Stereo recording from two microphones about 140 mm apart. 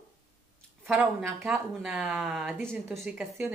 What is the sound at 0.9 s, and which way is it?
A woman's voice, 5° right (ahead or behind).